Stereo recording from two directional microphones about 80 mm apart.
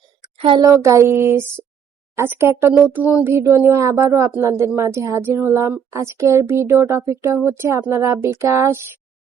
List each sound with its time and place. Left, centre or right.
0.2 s a sound: right
0.6 s child singing: right
2.7 s speech: right
3.2 s child singing: right